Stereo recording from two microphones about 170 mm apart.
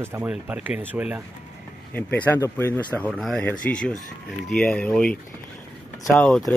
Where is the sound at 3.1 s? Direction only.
Centre (ahead or behind).